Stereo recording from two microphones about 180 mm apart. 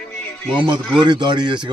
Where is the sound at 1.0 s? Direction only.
25° right (ahead or behind).